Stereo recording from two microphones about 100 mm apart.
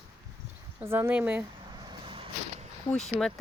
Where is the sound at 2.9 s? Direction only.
5° left (ahead or behind).